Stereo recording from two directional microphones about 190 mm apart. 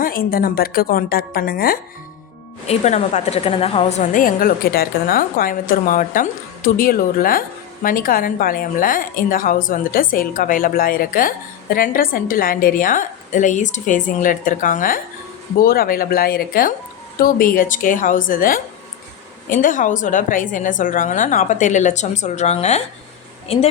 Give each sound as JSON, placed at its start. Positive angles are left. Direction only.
{"t": 0.0, "sound": "a woman's voice", "side_deg": 50}
{"t": 2.6, "sound": "a woman's voice", "side_deg": 35}